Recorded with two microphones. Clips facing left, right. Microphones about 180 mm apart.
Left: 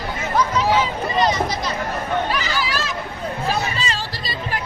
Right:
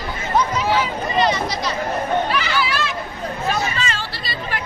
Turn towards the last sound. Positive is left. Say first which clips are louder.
# right 1 dB
turn(degrees=35)  # may be behind; listen again after turning